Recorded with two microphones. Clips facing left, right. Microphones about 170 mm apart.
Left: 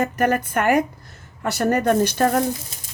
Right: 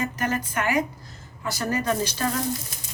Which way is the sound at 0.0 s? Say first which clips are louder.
Left 7 dB; 60° left (ahead or behind).